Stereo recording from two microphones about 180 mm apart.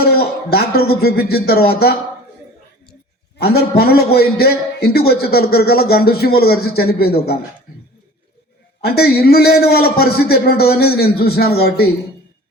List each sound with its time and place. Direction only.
0.0 s speech: 60° left (ahead or behind)
3.3 s a man's voice: 60° left (ahead or behind)
8.8 s a man's voice: 60° left (ahead or behind)